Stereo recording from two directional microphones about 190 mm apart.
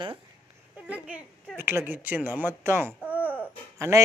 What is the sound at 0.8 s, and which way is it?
Speech, 5° right (ahead or behind).